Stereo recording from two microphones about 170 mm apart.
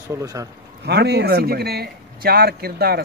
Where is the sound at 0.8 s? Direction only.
70° right (ahead or behind).